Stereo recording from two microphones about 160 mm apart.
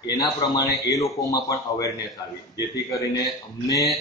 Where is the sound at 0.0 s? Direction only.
20° left (ahead or behind).